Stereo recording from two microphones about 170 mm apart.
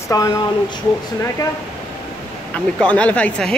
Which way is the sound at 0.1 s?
20° left (ahead or behind).